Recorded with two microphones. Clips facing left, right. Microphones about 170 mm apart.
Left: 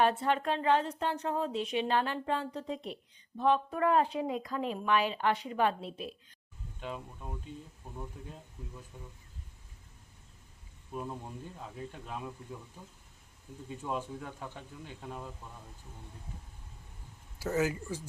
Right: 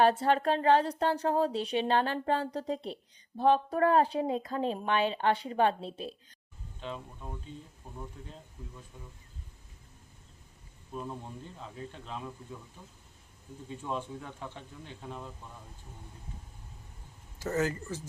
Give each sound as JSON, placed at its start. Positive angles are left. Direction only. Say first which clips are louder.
{"t": 0.0, "sound": "speech", "louder": "right 3 dB", "side_deg": -35}
{"t": 6.8, "sound": "speech", "louder": "even", "side_deg": 5}
{"t": 10.9, "sound": "speech", "louder": "even", "side_deg": 10}
{"t": 13.7, "sound": "speech", "louder": "even", "side_deg": 5}
{"t": 17.4, "sound": "speech", "louder": "even", "side_deg": 10}